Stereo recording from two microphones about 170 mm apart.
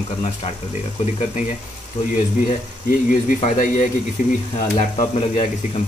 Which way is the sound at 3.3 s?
45° left (ahead or behind).